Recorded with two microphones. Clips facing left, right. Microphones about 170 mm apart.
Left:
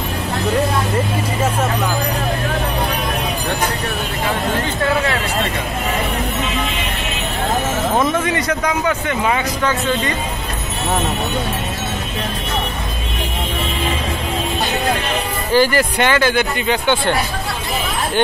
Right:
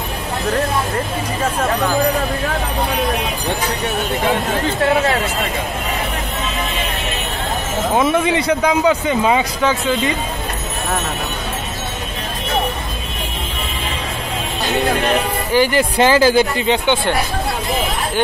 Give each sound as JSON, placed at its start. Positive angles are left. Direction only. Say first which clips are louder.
{"t": 7.9, "sound": "speech", "louder": "right 4 dB", "side_deg": -5}
{"t": 15.5, "sound": "speech", "louder": "left 1 dB", "side_deg": -15}
{"t": 16.0, "sound": "speech", "louder": "right 6 dB", "side_deg": -30}